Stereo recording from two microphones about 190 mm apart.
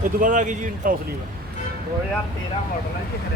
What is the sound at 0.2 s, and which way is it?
Speech, 45° right (ahead or behind).